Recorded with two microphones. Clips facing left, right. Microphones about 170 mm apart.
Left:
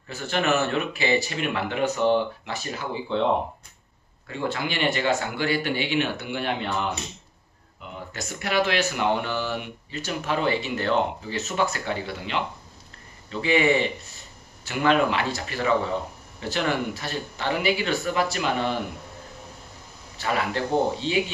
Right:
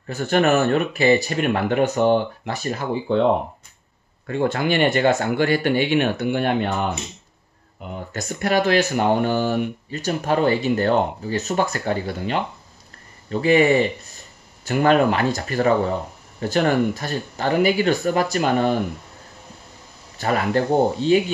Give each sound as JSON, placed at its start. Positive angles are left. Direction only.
{"t": 0.0, "sound": "speech", "side_deg": -50}
{"t": 4.3, "sound": "speech", "side_deg": -50}
{"t": 20.2, "sound": "speech", "side_deg": -45}